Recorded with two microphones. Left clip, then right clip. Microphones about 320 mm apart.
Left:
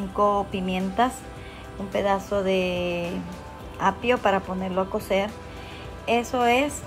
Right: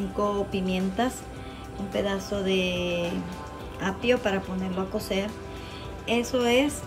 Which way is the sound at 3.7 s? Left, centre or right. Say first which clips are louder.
Left 3 dB; centre.